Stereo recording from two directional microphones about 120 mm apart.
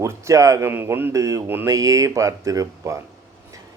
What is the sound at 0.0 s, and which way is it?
Speech, 25° right (ahead or behind).